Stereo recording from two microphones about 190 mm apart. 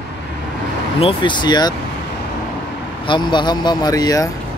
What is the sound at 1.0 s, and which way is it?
Speech, 25° left (ahead or behind).